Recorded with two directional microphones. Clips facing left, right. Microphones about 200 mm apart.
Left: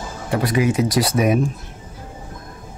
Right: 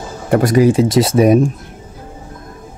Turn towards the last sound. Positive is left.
turn(degrees=-30)  # may be behind; listen again after turning